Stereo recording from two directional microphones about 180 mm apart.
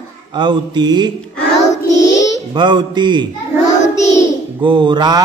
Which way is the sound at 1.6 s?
20° left (ahead or behind).